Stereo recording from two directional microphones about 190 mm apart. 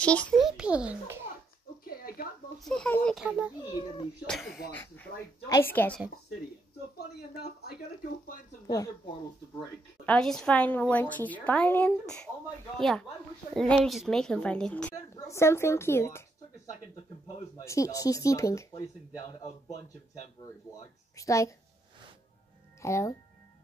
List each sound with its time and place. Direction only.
0.0 s a woman's voice: 5° left (ahead or behind); by 1.2 s 10° right (ahead or behind)
1.9 s a sound: 50° left (ahead or behind)
2.6 s a woman's voice: 5° left (ahead or behind)
3.3 s a child's voice: 5° right (ahead or behind)
5.5 s a woman's voice: 10° left (ahead or behind)
8.6 s speech: 20° left (ahead or behind)
9.6 s a woman's voice: 5° left (ahead or behind)
19.4 s speech: 35° left (ahead or behind)
21.2 s a woman's voice: 15° left (ahead or behind)
22.8 s speech: 15° left (ahead or behind)